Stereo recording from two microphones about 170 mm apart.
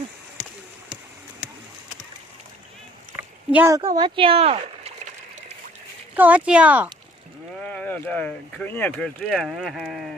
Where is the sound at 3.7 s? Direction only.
20° right (ahead or behind).